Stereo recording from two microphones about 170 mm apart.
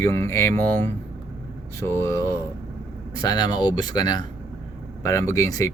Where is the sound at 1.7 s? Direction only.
15° left (ahead or behind).